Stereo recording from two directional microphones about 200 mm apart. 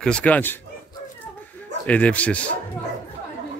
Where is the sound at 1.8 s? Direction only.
5° left (ahead or behind).